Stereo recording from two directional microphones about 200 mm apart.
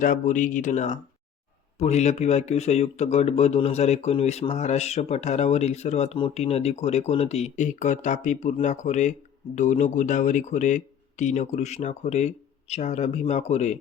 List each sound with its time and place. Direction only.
0.0 s speech: 40° left (ahead or behind)